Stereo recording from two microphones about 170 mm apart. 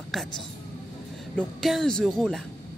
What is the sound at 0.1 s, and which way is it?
Speech, centre (ahead or behind).